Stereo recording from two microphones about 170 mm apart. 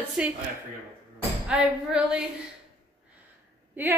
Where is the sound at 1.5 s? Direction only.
5° right (ahead or behind).